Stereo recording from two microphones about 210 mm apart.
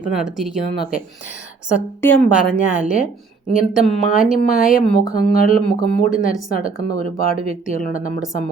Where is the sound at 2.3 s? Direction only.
5° right (ahead or behind).